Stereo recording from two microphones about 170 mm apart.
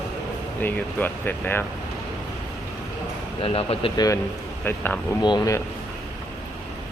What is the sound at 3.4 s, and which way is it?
Speech, 35° left (ahead or behind).